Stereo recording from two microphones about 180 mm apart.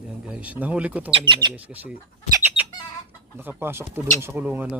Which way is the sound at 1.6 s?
10° right (ahead or behind).